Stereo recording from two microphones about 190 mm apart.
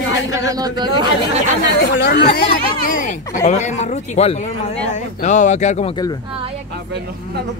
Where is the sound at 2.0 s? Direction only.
55° left (ahead or behind); by 5.9 s 35° left (ahead or behind).